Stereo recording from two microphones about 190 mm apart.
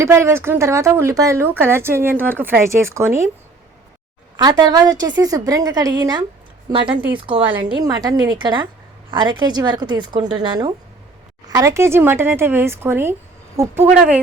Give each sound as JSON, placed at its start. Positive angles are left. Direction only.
{"t": 0.0, "sound": "speech", "side_deg": -15}
{"t": 4.4, "sound": "a woman's voice", "side_deg": -20}